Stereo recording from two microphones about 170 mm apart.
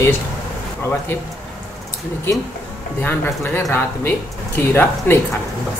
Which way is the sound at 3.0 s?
10° left (ahead or behind).